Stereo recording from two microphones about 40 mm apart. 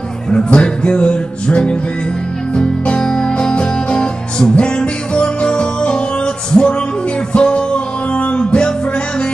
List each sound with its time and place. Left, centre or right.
0.3 s music: left